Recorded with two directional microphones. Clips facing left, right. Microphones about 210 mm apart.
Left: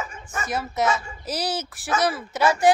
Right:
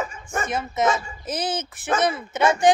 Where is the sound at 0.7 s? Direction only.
20° right (ahead or behind).